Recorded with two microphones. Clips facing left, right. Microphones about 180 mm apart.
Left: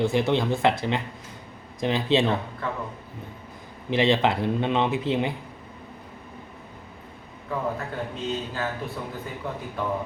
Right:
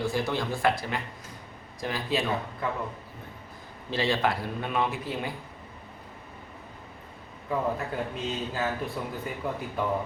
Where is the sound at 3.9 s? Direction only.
20° left (ahead or behind).